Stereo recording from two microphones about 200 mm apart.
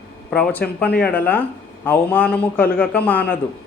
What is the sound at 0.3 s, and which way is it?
Speech, 5° left (ahead or behind).